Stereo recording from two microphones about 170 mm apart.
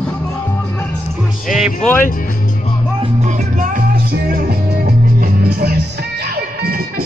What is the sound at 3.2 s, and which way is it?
Music, 50° right (ahead or behind).